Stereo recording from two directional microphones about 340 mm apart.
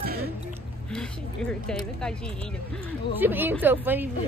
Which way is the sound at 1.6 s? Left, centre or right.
Centre.